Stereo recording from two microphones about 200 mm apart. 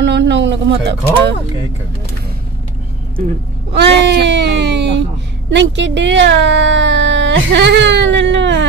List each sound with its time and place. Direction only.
0.0 s speech: 60° right (ahead or behind)
3.7 s speech: 60° right (ahead or behind)